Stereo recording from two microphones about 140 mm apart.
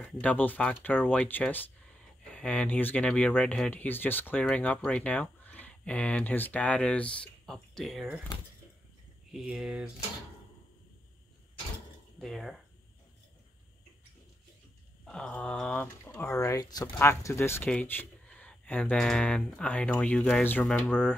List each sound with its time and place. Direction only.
0.0 s speech: 10° left (ahead or behind)
9.3 s speech: 5° right (ahead or behind)
12.2 s speech: centre (ahead or behind)
15.0 s speech: 5° left (ahead or behind)
16.2 s speech: 25° left (ahead or behind); by 20.9 s centre (ahead or behind)
20.9 s speech: 15° left (ahead or behind)